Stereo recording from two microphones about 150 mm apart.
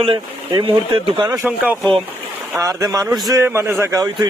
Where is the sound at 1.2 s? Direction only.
20° right (ahead or behind).